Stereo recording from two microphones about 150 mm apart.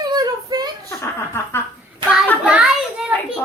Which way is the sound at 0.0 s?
25° right (ahead or behind).